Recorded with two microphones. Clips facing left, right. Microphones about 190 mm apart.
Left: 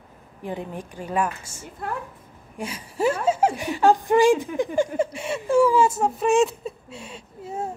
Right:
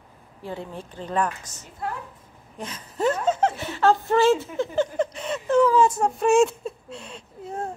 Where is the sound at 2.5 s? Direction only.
10° left (ahead or behind).